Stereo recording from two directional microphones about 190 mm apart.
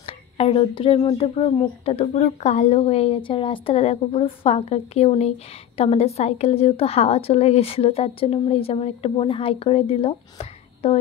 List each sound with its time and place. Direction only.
0.0 s speech: 30° left (ahead or behind)